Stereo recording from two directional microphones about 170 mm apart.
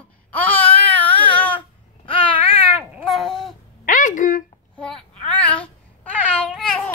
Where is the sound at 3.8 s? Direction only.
50° left (ahead or behind).